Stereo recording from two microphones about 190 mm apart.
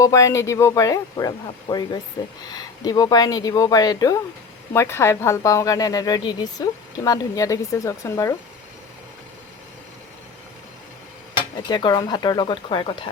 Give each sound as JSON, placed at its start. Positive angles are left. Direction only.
{"t": 0.0, "sound": "a woman's voice", "side_deg": 15}
{"t": 11.7, "sound": "speech", "side_deg": 25}